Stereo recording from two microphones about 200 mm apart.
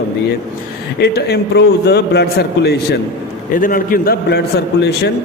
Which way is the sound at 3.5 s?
45° left (ahead or behind).